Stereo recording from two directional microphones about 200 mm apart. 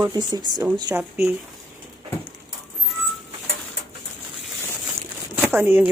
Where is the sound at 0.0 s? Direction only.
20° right (ahead or behind).